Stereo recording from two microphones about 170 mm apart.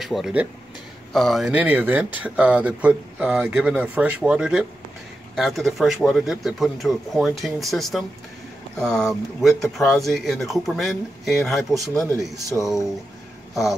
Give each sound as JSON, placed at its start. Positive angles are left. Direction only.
{"t": 0.0, "sound": "speech", "side_deg": 0}
{"t": 12.0, "sound": "speech", "side_deg": 20}